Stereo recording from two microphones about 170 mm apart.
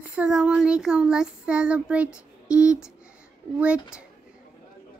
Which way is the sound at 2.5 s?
5° right (ahead or behind).